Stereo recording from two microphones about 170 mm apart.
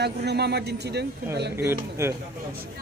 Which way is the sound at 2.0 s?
15° right (ahead or behind).